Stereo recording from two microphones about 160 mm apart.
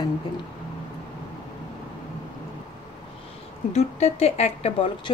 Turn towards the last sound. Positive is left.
turn(degrees=40)  # may be behind; listen again after turning